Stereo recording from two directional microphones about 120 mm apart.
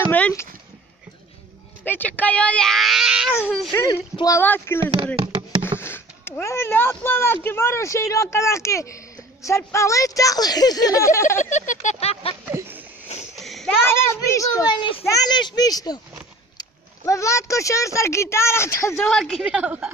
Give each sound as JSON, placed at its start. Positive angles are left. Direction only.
{"t": 0.0, "sound": "a sound", "side_deg": 10}
{"t": 1.9, "sound": "a child's voice", "side_deg": 15}
{"t": 3.7, "sound": "a child's voice", "side_deg": 20}
{"t": 4.9, "sound": "speech", "side_deg": -45}
{"t": 5.8, "sound": "speech", "side_deg": 20}
{"t": 11.3, "sound": "speech", "side_deg": 85}
{"t": 12.4, "sound": "speech", "side_deg": -15}
{"t": 13.4, "sound": "a sound", "side_deg": 0}
{"t": 13.8, "sound": "speech", "side_deg": 20}
{"t": 15.0, "sound": "speech", "side_deg": 35}
{"t": 18.9, "sound": "a woman's voice", "side_deg": 0}
{"t": 19.4, "sound": "a woman's voice", "side_deg": -10}